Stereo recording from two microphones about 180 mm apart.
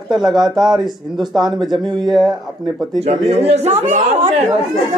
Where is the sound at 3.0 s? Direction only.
35° right (ahead or behind).